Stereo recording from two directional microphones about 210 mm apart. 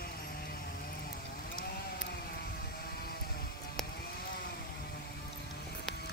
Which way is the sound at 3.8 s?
Centre (ahead or behind).